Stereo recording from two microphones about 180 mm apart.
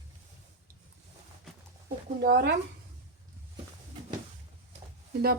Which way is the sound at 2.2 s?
55° right (ahead or behind).